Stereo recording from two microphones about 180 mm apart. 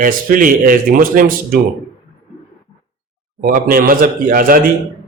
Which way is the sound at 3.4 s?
50° right (ahead or behind).